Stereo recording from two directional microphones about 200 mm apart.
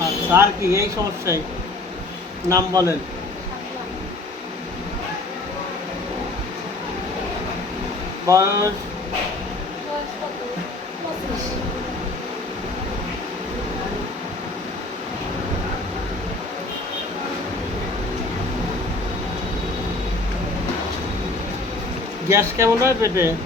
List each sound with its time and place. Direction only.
0.3 s speech: 10° right (ahead or behind)
2.5 s speech: 15° right (ahead or behind)
8.3 s speech: 15° right (ahead or behind)
22.3 s speech: 15° right (ahead or behind)